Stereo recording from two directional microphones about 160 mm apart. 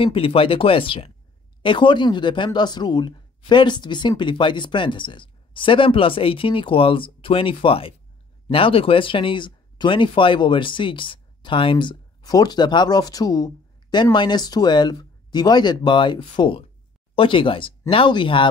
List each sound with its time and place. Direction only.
0.0 s speech: 35° left (ahead or behind)